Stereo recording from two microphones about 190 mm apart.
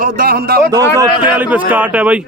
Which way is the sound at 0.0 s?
50° right (ahead or behind).